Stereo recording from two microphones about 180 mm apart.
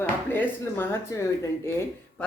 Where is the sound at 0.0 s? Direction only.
10° left (ahead or behind).